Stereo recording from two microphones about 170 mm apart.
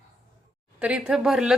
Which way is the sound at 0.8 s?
5° right (ahead or behind).